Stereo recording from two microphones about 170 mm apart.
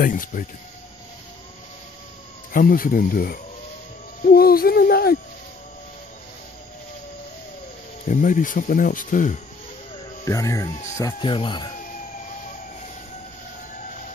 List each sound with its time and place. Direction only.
0.0 s speech: 50° left (ahead or behind)
2.5 s speech: 55° left (ahead or behind)
8.0 s speech: 50° left (ahead or behind)
10.2 s speech: 20° left (ahead or behind)